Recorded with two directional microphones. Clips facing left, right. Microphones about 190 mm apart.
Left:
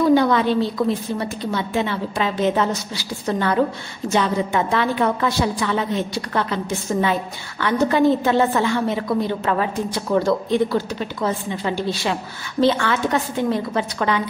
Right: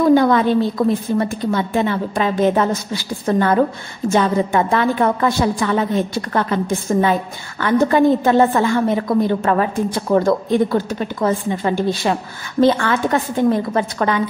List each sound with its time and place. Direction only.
0.1 s a woman's voice: 50° right (ahead or behind)